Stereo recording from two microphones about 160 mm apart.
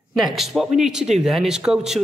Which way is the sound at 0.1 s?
Centre (ahead or behind).